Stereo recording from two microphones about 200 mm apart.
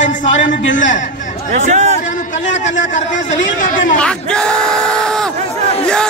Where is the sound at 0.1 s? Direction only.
40° left (ahead or behind).